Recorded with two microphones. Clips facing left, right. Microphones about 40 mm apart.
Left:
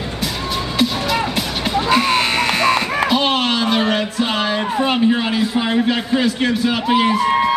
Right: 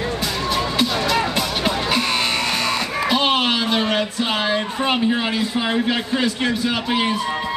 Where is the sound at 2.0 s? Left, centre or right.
Left.